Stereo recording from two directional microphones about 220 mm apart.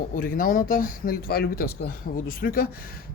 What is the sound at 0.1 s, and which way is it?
A man's voice, 40° left (ahead or behind).